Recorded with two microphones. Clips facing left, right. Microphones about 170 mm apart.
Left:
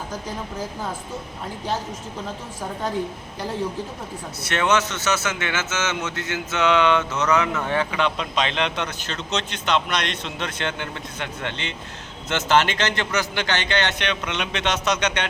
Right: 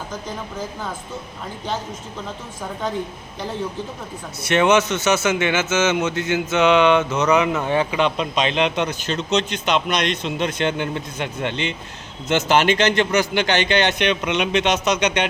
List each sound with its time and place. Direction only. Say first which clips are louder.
4.4 s a man's voice: right 5 dB; 15° right (ahead or behind)